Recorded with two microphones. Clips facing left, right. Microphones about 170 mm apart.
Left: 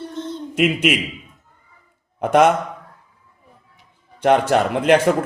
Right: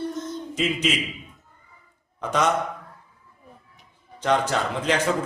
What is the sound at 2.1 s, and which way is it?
Speech, 60° left (ahead or behind).